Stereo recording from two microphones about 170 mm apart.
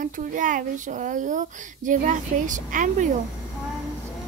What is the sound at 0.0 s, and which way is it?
Speech, 50° right (ahead or behind).